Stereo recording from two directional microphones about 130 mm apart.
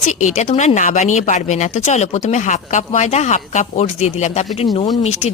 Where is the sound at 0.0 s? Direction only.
70° left (ahead or behind).